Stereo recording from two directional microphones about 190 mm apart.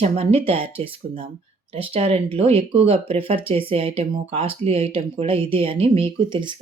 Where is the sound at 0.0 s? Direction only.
30° right (ahead or behind).